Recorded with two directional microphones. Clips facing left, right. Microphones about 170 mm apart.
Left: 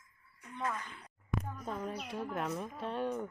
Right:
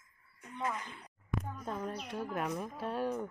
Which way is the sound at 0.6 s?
15° right (ahead or behind).